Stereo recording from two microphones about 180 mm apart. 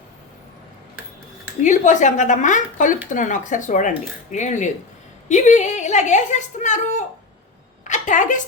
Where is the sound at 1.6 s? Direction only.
45° left (ahead or behind).